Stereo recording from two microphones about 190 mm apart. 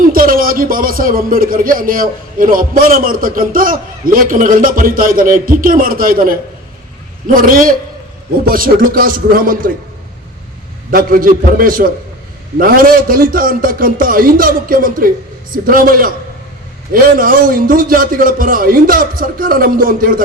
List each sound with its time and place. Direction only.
0.0 s speech: 50° right (ahead or behind)
10.9 s speech: 50° right (ahead or behind)